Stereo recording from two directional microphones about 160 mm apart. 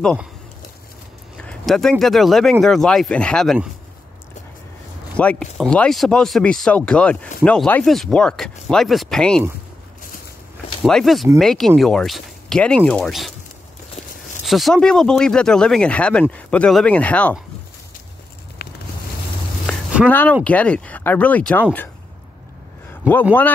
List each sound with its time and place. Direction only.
1.4 s speech: 5° left (ahead or behind)
5.1 s speech: 10° left (ahead or behind)
10.8 s speech: centre (ahead or behind)
14.4 s speech: centre (ahead or behind)
18.6 s boat: 75° left (ahead or behind)
19.6 s a sound: 5° right (ahead or behind)
20.1 s speech: 10° left (ahead or behind)